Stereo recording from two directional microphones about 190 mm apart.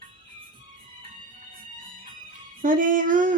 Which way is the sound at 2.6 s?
45° right (ahead or behind).